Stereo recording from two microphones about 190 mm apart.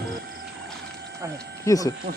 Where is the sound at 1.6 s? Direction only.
20° left (ahead or behind).